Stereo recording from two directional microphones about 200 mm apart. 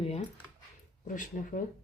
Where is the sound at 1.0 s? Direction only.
40° left (ahead or behind).